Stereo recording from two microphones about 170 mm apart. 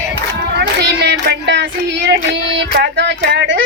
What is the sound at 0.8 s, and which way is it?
Child singing, 75° right (ahead or behind).